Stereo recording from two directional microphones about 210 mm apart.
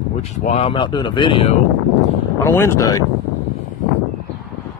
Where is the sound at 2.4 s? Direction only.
10° left (ahead or behind).